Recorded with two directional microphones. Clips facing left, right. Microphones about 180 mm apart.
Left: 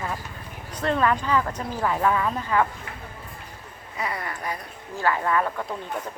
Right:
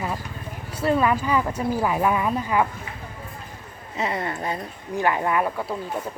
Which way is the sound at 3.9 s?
25° right (ahead or behind).